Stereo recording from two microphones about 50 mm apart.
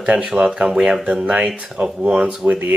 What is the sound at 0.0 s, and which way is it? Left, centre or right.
Speech, centre.